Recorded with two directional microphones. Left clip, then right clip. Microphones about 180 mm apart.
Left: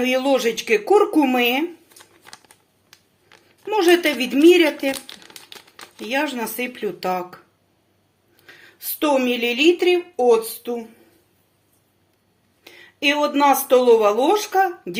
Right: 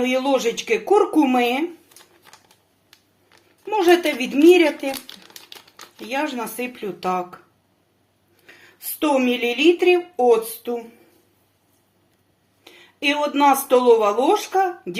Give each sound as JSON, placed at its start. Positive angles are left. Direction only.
{"t": 0.0, "sound": "speech", "side_deg": 20}
{"t": 2.9, "sound": "speech", "side_deg": 30}
{"t": 8.4, "sound": "speech", "side_deg": 20}
{"t": 12.6, "sound": "speech", "side_deg": 25}